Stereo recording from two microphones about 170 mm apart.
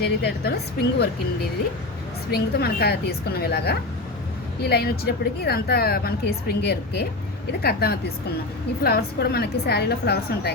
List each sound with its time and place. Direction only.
0.2 s a woman's voice: 70° left (ahead or behind)
2.3 s a woman's voice: 65° left (ahead or behind)